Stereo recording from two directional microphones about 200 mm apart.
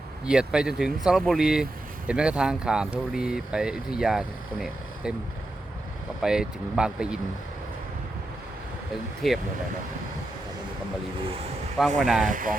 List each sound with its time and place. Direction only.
0.3 s speech: 5° right (ahead or behind)
6.2 s speech: 5° right (ahead or behind)
9.2 s speech: centre (ahead or behind)
11.9 s speech: 5° right (ahead or behind)
12.2 s speech: 40° right (ahead or behind)